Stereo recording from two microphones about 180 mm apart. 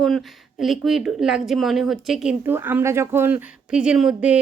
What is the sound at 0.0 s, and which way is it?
Speech, centre (ahead or behind).